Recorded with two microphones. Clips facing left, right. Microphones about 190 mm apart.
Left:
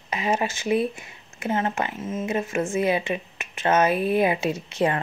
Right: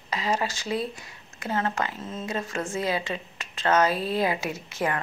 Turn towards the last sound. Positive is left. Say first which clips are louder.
# left 5 dB
turn(degrees=25)  # may be behind; listen again after turning